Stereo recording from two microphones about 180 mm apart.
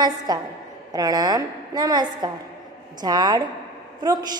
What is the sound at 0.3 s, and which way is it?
A woman's voice, 20° right (ahead or behind).